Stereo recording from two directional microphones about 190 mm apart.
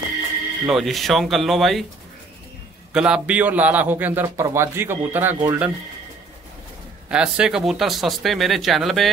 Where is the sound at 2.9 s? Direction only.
5° right (ahead or behind).